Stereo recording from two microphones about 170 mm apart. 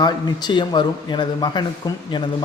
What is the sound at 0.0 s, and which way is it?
A man's voice, 25° left (ahead or behind).